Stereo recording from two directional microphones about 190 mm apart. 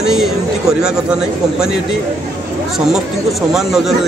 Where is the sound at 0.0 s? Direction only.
Centre (ahead or behind).